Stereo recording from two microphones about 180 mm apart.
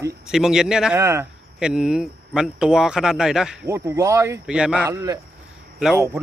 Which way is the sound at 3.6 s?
15° right (ahead or behind).